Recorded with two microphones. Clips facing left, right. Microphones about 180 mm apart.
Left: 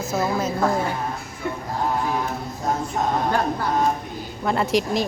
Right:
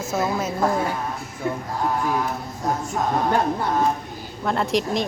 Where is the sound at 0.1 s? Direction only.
5° right (ahead or behind).